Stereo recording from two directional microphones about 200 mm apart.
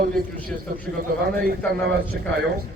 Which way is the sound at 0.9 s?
45° right (ahead or behind).